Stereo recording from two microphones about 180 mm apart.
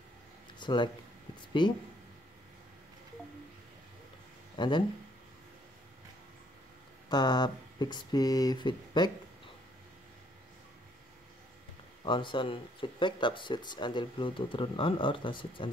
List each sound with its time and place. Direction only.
0.6 s a sound: 25° left (ahead or behind)
1.6 s speech: 25° left (ahead or behind)
4.6 s speech: 25° left (ahead or behind)
7.1 s speech: 25° left (ahead or behind)
12.0 s speech: 25° left (ahead or behind)